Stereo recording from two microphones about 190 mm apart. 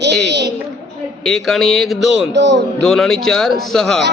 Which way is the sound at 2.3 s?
65° right (ahead or behind).